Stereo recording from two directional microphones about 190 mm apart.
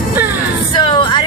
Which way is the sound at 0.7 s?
25° left (ahead or behind).